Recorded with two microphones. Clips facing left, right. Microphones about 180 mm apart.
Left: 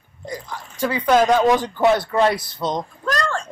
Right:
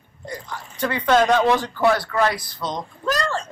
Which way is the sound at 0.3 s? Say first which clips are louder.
Left 2 dB; 10° left (ahead or behind).